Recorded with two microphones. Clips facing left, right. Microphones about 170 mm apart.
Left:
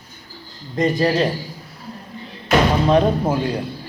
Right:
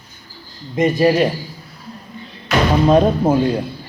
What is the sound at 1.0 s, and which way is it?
Speech, 20° right (ahead or behind).